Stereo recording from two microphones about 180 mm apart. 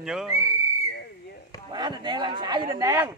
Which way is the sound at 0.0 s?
5° right (ahead or behind).